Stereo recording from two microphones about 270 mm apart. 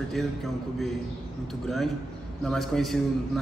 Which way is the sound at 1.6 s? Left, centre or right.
Centre.